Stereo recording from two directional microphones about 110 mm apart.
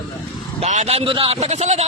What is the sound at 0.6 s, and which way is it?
A man's voice, 85° right.